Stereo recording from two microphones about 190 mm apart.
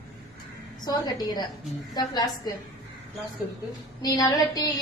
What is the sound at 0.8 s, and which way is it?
A woman's voice, 20° left (ahead or behind).